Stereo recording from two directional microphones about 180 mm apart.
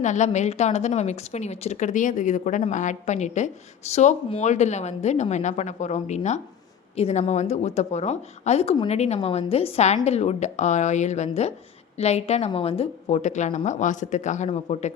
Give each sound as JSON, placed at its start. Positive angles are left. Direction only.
{"t": 0.0, "sound": "speech", "side_deg": 40}